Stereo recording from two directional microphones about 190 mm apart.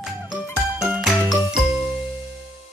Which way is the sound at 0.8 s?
5° right (ahead or behind).